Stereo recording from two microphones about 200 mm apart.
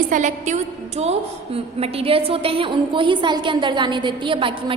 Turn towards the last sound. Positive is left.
turn(degrees=-25)  # may be behind; listen again after turning